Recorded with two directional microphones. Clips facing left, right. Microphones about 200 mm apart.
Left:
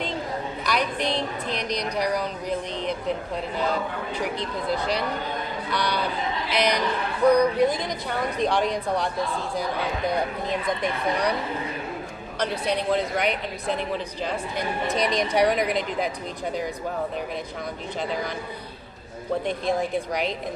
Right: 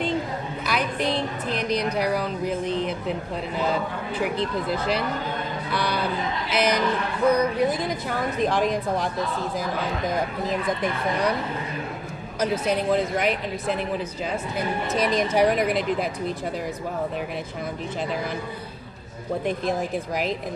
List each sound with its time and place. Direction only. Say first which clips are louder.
0.7 s a woman's voice: right 1 dB; 5° right (ahead or behind)
5.7 s a woman's voice: right 1 dB; 5° right (ahead or behind)
12.4 s a woman's voice: right 2 dB; 5° right (ahead or behind)